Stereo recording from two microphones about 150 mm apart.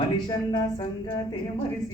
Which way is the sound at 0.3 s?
30° left (ahead or behind).